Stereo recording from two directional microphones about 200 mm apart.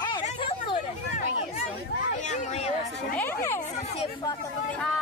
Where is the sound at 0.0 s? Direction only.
25° left (ahead or behind).